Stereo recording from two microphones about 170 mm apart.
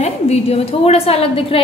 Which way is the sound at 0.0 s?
40° left (ahead or behind).